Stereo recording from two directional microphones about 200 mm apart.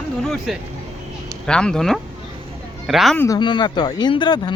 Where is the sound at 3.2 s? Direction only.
20° left (ahead or behind).